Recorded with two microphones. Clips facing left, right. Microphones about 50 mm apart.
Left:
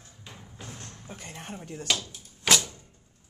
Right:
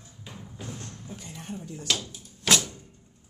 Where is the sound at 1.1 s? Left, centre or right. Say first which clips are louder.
Even; left.